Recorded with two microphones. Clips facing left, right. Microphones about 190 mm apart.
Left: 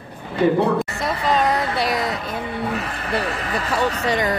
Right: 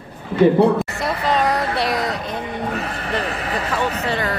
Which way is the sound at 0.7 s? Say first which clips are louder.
Right 1 dB; centre (ahead or behind).